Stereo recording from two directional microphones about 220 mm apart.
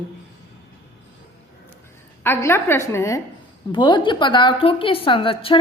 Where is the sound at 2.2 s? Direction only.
10° left (ahead or behind).